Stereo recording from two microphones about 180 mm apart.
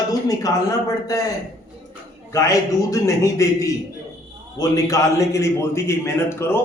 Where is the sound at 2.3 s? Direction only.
15° left (ahead or behind).